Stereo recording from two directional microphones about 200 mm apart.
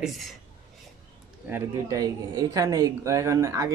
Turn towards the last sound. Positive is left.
turn(degrees=-15)  # may be behind; listen again after turning